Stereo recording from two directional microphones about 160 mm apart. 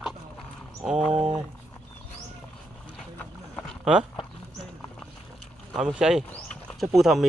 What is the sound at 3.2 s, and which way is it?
Boat, 5° left (ahead or behind).